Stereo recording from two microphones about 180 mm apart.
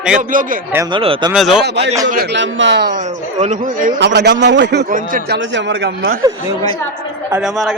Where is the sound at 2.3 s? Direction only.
90° right.